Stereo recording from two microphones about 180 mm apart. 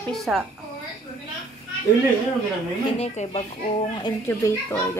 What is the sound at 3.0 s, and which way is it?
Speech, 35° left (ahead or behind).